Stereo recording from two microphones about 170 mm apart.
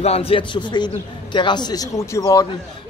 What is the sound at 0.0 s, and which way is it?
A man's voice, 35° left (ahead or behind).